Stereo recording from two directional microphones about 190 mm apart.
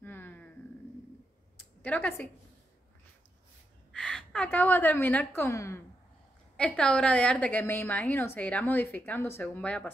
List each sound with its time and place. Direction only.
0.0 s a sound: 10° left (ahead or behind)
1.8 s speech: 10° left (ahead or behind)
3.9 s a woman's voice: 5° left (ahead or behind)
6.5 s a woman's voice: 5° left (ahead or behind)